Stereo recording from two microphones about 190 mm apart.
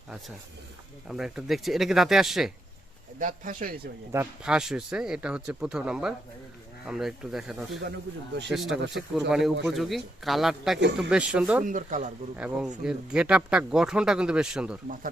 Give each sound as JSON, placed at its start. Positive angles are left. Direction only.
{"t": 1.0, "sound": "speech", "side_deg": -5}
{"t": 3.2, "sound": "speech", "side_deg": -45}
{"t": 4.1, "sound": "speech", "side_deg": -10}
{"t": 10.8, "sound": "a man's voice", "side_deg": -65}
{"t": 11.1, "sound": "speech", "side_deg": -5}
{"t": 11.6, "sound": "speech", "side_deg": -45}
{"t": 12.4, "sound": "speech", "side_deg": -5}